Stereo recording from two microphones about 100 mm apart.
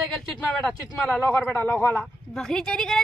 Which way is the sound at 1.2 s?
20° left (ahead or behind).